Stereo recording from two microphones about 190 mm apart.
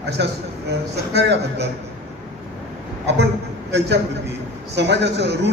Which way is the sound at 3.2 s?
60° right (ahead or behind).